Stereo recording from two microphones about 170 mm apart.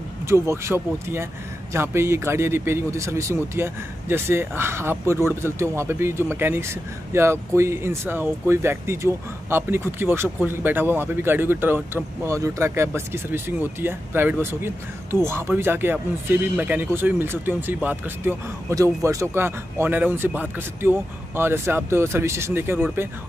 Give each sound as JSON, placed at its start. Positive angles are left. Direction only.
{"t": 0.3, "sound": "speech", "side_deg": -15}